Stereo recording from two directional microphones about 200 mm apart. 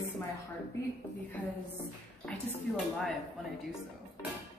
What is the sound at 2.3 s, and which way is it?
Speech, 5° left (ahead or behind).